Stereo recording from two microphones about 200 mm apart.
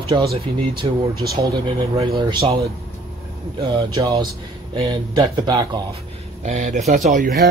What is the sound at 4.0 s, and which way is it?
Speech, 15° right (ahead or behind).